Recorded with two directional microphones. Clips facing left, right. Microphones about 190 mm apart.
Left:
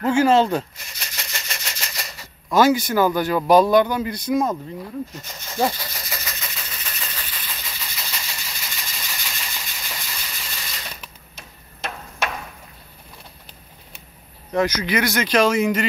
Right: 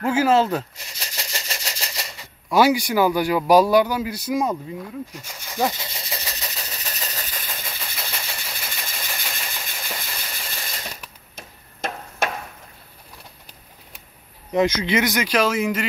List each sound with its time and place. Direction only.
0.0 s speech: 5° right (ahead or behind)
0.9 s engine: 35° right (ahead or behind)
2.5 s speech: 10° right (ahead or behind)
5.7 s vehicle: 25° right (ahead or behind); by 10.8 s 50° right (ahead or behind)
11.3 s tick-tock: 50° right (ahead or behind)
14.5 s speech: 20° right (ahead or behind); by 15.9 s 5° right (ahead or behind)